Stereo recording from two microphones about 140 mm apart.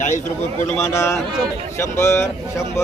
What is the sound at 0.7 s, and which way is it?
Speech, 20° left (ahead or behind).